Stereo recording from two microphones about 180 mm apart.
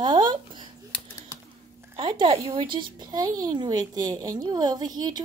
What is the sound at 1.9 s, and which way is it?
Speech, 30° right (ahead or behind).